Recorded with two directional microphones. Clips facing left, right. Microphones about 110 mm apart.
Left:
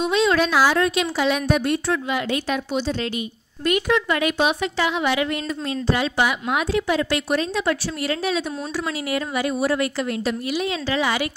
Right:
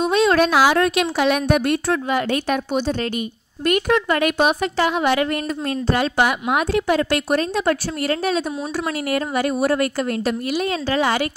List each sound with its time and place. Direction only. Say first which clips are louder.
0.0 s speech: right 3 dB; 50° right (ahead or behind)